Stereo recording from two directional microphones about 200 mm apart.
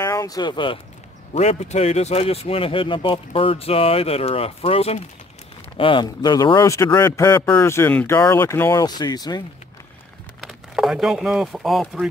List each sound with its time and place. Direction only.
0.0 s speech: 15° left (ahead or behind)
1.3 s a man's voice: 35° left (ahead or behind)
10.4 s speech: centre (ahead or behind)